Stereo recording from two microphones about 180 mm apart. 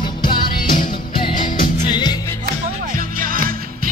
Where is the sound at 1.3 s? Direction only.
50° left (ahead or behind).